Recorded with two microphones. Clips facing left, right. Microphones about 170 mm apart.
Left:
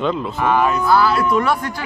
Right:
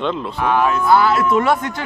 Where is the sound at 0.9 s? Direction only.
25° right (ahead or behind).